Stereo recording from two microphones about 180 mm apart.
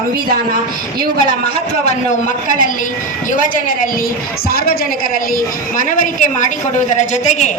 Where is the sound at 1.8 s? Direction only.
45° left (ahead or behind).